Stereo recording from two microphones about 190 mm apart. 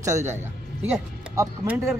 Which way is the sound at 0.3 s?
10° right (ahead or behind).